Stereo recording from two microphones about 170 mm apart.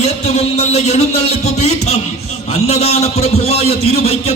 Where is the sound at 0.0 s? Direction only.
40° left (ahead or behind).